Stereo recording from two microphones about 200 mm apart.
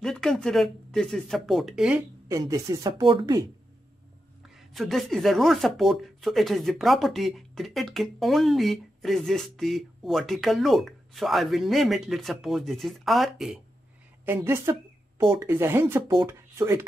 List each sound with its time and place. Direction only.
0.0 s speech: centre (ahead or behind)
2.2 s speech: 15° right (ahead or behind)
4.6 s speech: centre (ahead or behind)
14.2 s speech: 10° right (ahead or behind)